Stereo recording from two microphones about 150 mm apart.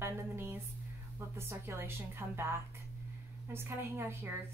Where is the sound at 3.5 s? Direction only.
15° right (ahead or behind).